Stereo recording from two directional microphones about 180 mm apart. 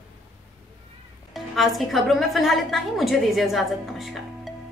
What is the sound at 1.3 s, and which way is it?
A woman's voice, centre (ahead or behind).